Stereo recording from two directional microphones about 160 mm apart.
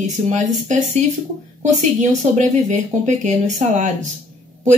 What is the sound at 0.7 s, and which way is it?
A woman's voice, 50° right (ahead or behind).